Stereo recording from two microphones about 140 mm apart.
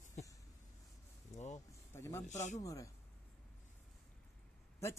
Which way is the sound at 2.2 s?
60° left (ahead or behind).